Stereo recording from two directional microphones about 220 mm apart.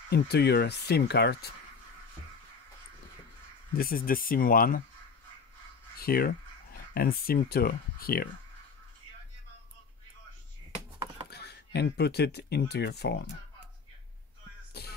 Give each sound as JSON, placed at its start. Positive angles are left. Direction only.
{"t": 0.1, "sound": "speech", "side_deg": 50}
{"t": 3.7, "sound": "speech", "side_deg": 40}
{"t": 5.9, "sound": "speech", "side_deg": 45}
{"t": 11.2, "sound": "speech", "side_deg": 50}
{"t": 14.7, "sound": "music", "side_deg": 45}